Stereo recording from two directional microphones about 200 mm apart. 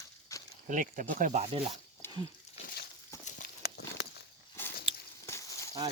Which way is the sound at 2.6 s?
45° left (ahead or behind).